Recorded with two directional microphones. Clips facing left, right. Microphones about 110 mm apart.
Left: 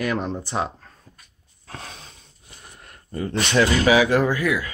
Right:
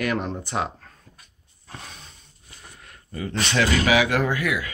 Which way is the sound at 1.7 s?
90° left.